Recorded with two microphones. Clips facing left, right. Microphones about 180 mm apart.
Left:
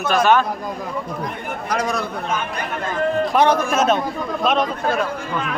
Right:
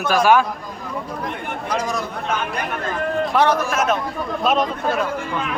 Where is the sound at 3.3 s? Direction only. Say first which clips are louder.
Left 1 dB; 20° left (ahead or behind).